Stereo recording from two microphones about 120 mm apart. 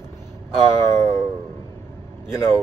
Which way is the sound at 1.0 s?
25° left (ahead or behind).